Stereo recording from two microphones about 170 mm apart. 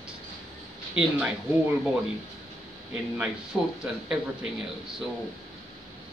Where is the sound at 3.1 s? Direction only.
5° right (ahead or behind).